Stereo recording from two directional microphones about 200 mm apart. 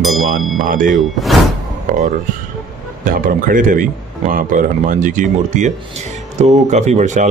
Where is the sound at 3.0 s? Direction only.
40° right (ahead or behind).